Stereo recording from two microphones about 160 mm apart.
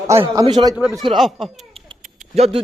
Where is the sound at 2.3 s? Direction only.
40° right (ahead or behind).